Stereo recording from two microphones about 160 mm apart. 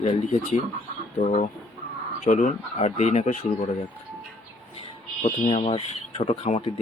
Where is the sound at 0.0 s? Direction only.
45° left (ahead or behind).